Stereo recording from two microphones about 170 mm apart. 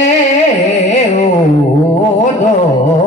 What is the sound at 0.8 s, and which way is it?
Music, 40° left (ahead or behind).